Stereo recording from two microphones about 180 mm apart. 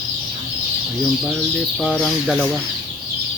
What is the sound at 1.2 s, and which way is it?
Speech, centre (ahead or behind).